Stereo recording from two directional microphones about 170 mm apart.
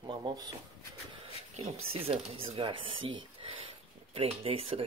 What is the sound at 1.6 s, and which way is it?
Speech, 35° right (ahead or behind).